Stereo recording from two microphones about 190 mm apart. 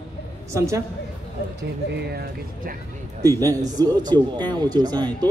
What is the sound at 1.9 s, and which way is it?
Speech, 55° right (ahead or behind).